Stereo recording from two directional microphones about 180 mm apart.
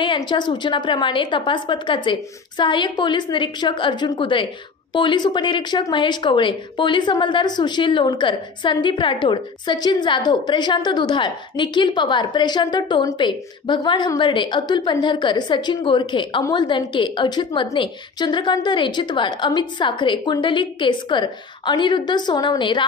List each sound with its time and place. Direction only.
0.0 s speech: 25° left (ahead or behind)